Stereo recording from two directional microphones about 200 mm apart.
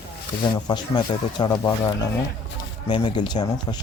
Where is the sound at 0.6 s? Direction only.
20° left (ahead or behind).